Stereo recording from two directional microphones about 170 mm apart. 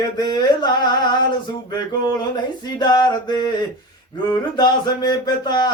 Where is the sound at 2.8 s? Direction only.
25° left (ahead or behind).